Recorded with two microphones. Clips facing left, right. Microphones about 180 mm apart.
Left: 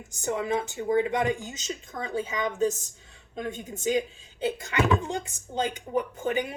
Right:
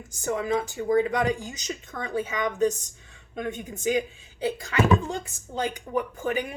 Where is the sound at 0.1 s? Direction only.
20° left (ahead or behind).